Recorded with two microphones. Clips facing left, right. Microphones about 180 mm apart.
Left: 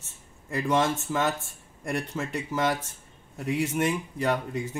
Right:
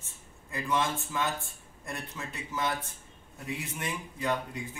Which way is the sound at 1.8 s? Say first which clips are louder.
Left 9 dB; 80° left.